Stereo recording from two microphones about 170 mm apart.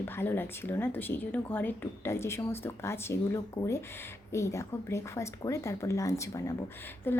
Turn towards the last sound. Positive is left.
turn(degrees=10)  # may be behind; listen again after turning